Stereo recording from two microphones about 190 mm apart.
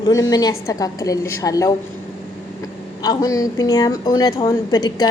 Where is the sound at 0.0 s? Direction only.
20° left (ahead or behind).